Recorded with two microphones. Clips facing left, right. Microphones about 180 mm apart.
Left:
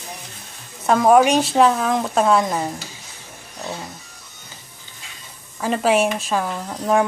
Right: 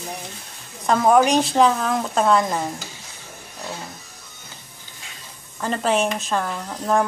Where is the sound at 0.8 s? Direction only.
5° left (ahead or behind).